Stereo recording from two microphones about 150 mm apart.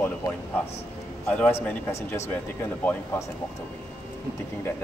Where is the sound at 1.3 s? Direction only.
10° left (ahead or behind).